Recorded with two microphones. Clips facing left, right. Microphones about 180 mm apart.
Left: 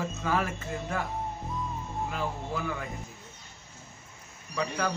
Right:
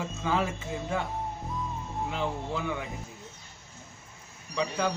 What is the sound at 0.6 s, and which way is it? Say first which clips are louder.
Speech: right 1 dB; 10° right (ahead or behind).